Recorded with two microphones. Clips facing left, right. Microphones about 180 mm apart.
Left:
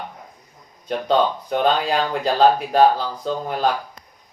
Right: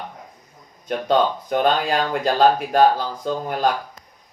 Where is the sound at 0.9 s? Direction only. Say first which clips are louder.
Even; 50° right (ahead or behind).